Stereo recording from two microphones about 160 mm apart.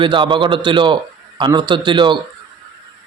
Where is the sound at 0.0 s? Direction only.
30° right (ahead or behind).